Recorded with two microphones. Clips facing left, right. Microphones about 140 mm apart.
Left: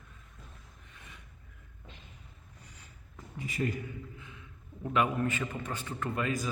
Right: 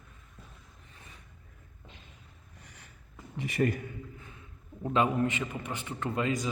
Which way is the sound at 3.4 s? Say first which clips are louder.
Right 5 dB; 70° right (ahead or behind).